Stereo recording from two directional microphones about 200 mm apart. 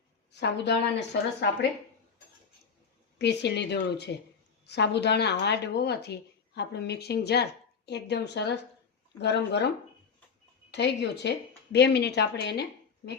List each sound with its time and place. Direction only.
0.3 s speech: 60° left (ahead or behind)
3.2 s speech: 60° left (ahead or behind)